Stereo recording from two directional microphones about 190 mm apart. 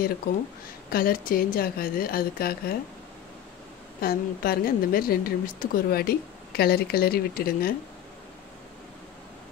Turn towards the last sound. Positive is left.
turn(degrees=50)  # may be behind; listen again after turning